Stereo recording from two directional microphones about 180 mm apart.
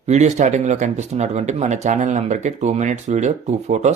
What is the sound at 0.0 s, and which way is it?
Speech, 40° right (ahead or behind).